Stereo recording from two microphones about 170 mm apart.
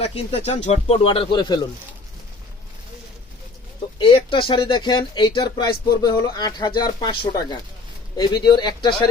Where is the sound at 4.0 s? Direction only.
30° left (ahead or behind).